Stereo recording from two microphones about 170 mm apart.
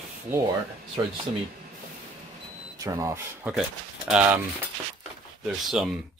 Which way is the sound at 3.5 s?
5° right (ahead or behind).